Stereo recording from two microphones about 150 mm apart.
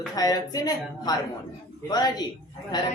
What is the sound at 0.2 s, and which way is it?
Speech, 25° left (ahead or behind).